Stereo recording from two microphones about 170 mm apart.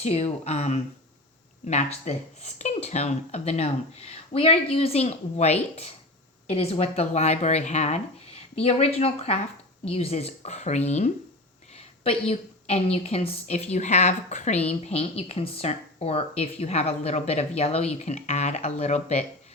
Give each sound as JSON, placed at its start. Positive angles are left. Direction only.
{"t": 0.0, "sound": "a woman's voice", "side_deg": 40}